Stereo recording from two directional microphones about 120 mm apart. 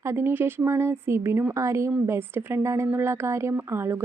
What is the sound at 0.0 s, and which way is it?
A woman's voice, 20° right (ahead or behind).